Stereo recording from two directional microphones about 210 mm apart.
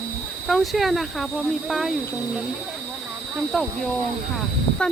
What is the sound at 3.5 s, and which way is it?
Speech, centre (ahead or behind).